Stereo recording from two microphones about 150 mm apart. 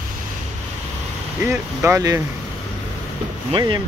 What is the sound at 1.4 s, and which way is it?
Speech, 20° right (ahead or behind).